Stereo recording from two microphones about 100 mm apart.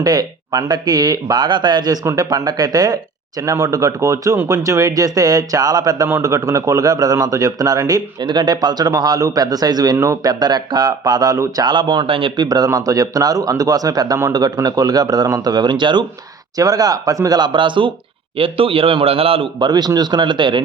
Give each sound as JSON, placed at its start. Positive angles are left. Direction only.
{"t": 0.0, "sound": "a man's voice", "side_deg": -40}
{"t": 10.0, "sound": "a man's voice", "side_deg": -30}
{"t": 10.4, "sound": "speech", "side_deg": -45}
{"t": 12.4, "sound": "a man's voice", "side_deg": -40}
{"t": 16.6, "sound": "a man's voice", "side_deg": -35}
{"t": 18.3, "sound": "a man's voice", "side_deg": -65}
{"t": 19.5, "sound": "speech", "side_deg": -45}